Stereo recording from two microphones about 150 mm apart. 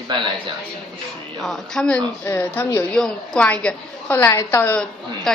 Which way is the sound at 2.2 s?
15° left (ahead or behind).